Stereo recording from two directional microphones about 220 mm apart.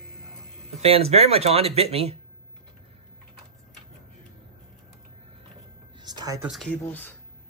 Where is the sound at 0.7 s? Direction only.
25° right (ahead or behind).